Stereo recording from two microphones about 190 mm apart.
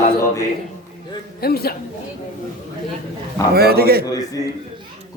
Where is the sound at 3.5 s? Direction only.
55° right (ahead or behind).